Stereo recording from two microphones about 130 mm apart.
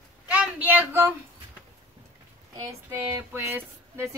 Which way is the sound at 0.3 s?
10° right (ahead or behind).